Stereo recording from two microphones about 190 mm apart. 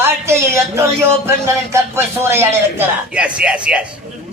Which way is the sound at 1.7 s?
15° right (ahead or behind).